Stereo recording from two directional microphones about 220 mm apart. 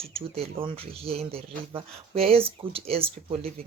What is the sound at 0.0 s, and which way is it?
Speech, 25° right (ahead or behind).